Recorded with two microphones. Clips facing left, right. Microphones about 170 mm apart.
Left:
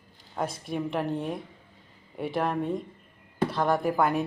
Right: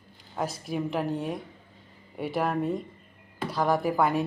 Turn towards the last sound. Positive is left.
turn(degrees=0)  # may be behind; listen again after turning